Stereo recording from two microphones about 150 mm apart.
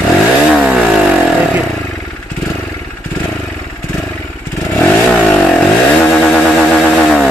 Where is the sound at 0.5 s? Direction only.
5° right (ahead or behind).